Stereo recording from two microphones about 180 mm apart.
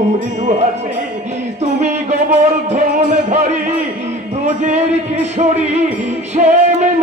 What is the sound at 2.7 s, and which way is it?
Music, 40° right (ahead or behind).